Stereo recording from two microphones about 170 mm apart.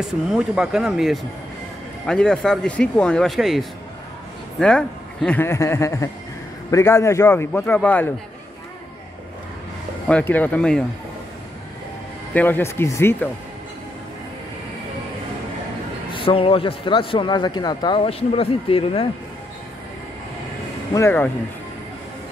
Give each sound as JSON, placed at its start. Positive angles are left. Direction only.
{"t": 0.0, "sound": "speech", "side_deg": -5}
{"t": 10.0, "sound": "speech", "side_deg": 10}
{"t": 12.4, "sound": "speech", "side_deg": 10}
{"t": 16.1, "sound": "a man's voice", "side_deg": 30}
{"t": 20.9, "sound": "speech", "side_deg": 15}